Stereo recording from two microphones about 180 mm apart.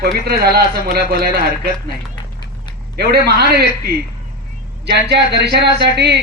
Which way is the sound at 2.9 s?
65° right (ahead or behind).